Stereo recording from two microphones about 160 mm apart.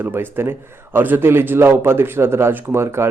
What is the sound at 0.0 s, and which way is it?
A man's voice, 15° right (ahead or behind).